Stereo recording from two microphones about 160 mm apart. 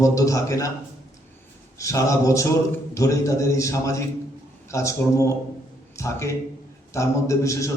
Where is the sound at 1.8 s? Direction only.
20° left (ahead or behind).